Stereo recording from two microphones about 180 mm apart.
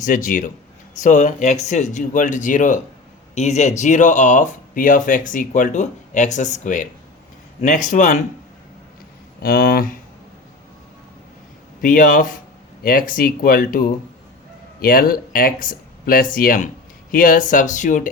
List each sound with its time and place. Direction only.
0.0 s speech: 45° left (ahead or behind)
9.4 s speech: 55° left (ahead or behind)
11.8 s speech: 50° left (ahead or behind)